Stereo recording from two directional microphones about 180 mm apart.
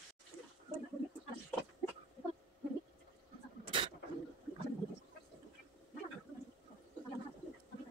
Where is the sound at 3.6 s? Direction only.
30° right (ahead or behind).